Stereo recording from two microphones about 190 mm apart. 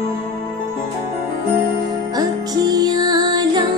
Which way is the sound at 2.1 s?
20° right (ahead or behind).